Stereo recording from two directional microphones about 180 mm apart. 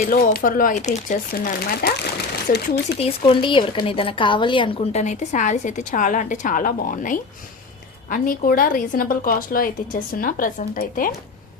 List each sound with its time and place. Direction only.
0.1 s a woman's voice: 50° left (ahead or behind)
3.0 s a woman's voice: 30° left (ahead or behind); by 11.1 s 50° left (ahead or behind)